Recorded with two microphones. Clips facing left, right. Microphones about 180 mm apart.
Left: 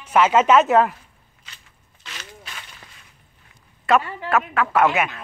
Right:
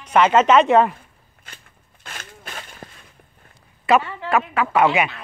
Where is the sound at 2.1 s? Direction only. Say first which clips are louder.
Right 2 dB; 50° right (ahead or behind).